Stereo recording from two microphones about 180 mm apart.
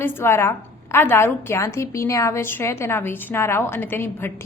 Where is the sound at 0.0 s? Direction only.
15° left (ahead or behind).